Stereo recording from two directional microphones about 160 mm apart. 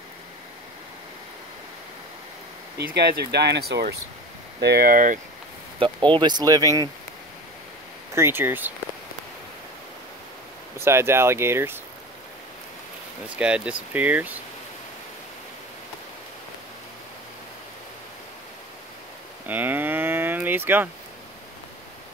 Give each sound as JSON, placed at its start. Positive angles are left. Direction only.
{"t": 2.8, "sound": "speech", "side_deg": -90}
{"t": 5.8, "sound": "speech", "side_deg": -30}
{"t": 8.1, "sound": "speech", "side_deg": -15}
{"t": 10.8, "sound": "speech", "side_deg": -15}
{"t": 13.4, "sound": "speech", "side_deg": -5}
{"t": 19.4, "sound": "cattle", "side_deg": -10}